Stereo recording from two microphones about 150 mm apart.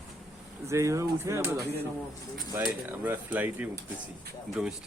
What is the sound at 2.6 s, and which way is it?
Speech, 10° right (ahead or behind).